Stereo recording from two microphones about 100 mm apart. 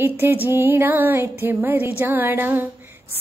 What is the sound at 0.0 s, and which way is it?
Speech, 20° right (ahead or behind).